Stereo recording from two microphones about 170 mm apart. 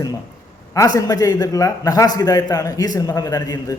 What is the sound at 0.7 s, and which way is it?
A man's voice, 20° left (ahead or behind).